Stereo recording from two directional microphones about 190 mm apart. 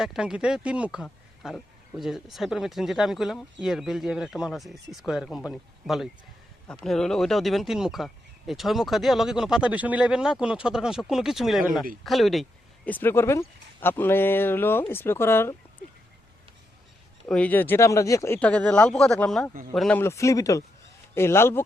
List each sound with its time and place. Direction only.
0.0 s speech: 5° right (ahead or behind); by 15.5 s 15° left (ahead or behind)
17.2 s speech: 5° left (ahead or behind)
20.0 s speech: 15° left (ahead or behind)